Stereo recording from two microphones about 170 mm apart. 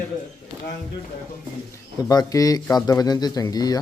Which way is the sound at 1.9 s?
20° left (ahead or behind).